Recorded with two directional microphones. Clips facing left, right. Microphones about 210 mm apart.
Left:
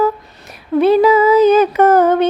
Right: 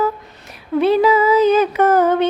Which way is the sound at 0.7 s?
45° left (ahead or behind).